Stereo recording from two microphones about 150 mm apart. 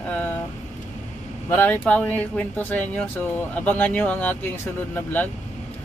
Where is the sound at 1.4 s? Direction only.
15° left (ahead or behind).